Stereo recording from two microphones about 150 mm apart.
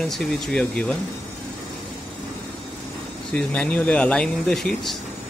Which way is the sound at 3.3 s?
10° left (ahead or behind).